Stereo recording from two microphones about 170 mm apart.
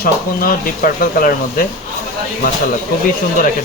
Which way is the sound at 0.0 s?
55° left (ahead or behind).